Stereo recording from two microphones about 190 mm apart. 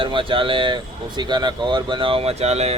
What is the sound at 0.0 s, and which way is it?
Speech, 25° right (ahead or behind).